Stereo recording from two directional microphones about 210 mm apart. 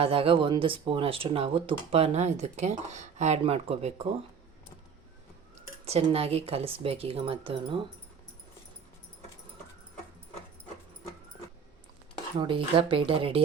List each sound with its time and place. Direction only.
0.0 s speech: 25° right (ahead or behind)
5.8 s speech: 30° right (ahead or behind)
12.4 s speech: 25° right (ahead or behind)